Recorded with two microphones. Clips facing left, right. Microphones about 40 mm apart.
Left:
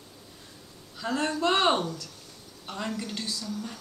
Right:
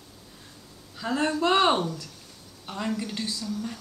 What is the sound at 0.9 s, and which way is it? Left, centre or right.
A woman's voice, centre.